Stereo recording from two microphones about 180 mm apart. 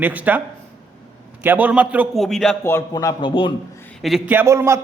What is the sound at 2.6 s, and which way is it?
Speech, 15° left (ahead or behind).